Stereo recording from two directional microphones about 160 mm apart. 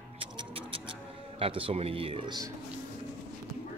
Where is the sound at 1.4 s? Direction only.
35° right (ahead or behind).